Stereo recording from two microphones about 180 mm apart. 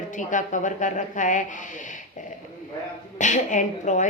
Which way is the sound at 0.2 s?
45° left (ahead or behind).